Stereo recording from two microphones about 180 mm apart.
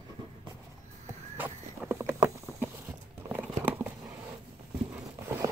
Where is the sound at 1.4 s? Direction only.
15° right (ahead or behind).